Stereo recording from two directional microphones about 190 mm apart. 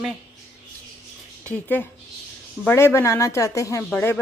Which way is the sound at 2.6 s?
15° left (ahead or behind).